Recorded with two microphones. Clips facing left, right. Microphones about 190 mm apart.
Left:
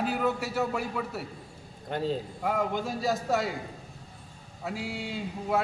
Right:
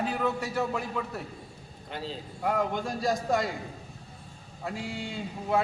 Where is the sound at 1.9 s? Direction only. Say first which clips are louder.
Left 6 dB; 50° left (ahead or behind).